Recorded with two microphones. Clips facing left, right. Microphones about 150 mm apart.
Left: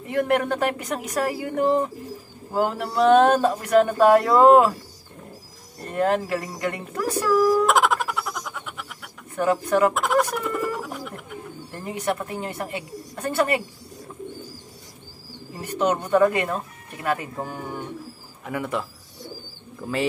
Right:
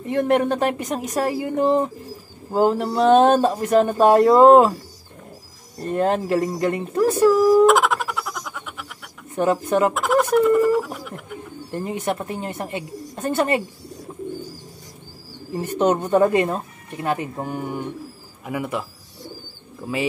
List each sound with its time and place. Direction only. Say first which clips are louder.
0.1 s speech: right 3 dB; 25° right (ahead or behind)
5.9 s speech: right 3 dB; 30° right (ahead or behind)
7.6 s music: right 4 dB; centre (ahead or behind)
9.3 s speech: right 2 dB; 20° right (ahead or behind)
9.9 s speech: right 5 dB; centre (ahead or behind)
11.7 s speech: right 2 dB; 20° right (ahead or behind)
15.8 s speech: right 2 dB; 25° right (ahead or behind); by 20.1 s 5° right (ahead or behind)